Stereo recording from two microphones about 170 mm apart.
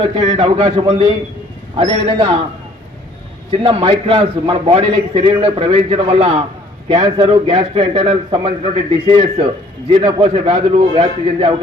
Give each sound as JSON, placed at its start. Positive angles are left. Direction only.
{"t": 0.2, "sound": "a man's voice", "side_deg": -25}
{"t": 3.6, "sound": "a man's voice", "side_deg": -30}